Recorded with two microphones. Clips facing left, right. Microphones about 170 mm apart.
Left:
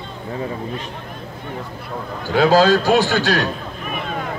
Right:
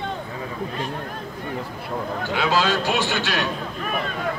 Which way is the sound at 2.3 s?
40° left (ahead or behind).